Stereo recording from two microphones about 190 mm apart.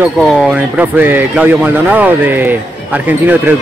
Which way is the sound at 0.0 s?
5° right (ahead or behind).